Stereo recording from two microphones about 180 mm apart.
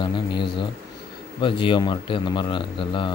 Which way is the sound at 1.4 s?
25° left (ahead or behind).